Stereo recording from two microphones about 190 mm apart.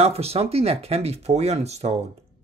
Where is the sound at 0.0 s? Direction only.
30° right (ahead or behind).